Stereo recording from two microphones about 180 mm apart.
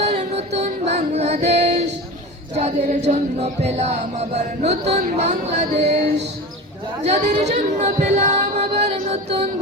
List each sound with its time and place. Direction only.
0.0 s music: 35° right (ahead or behind)
1.5 s female singing: 40° right (ahead or behind)
2.6 s chant: 35° right (ahead or behind)
7.0 s chant: 35° right (ahead or behind)